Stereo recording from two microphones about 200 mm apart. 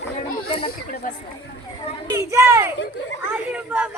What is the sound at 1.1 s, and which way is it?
Speech, 40° left (ahead or behind).